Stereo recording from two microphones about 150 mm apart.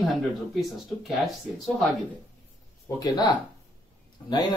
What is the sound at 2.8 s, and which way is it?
Speech, 25° left (ahead or behind).